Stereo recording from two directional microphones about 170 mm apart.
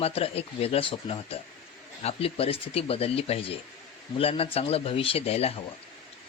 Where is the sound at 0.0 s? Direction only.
35° left (ahead or behind).